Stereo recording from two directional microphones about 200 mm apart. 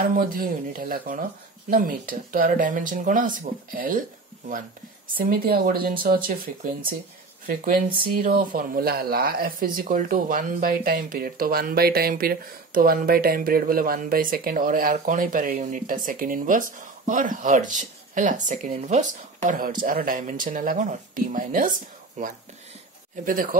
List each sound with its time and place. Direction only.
0.2 s speech: 45° right (ahead or behind)
5.1 s speech: 45° right (ahead or behind)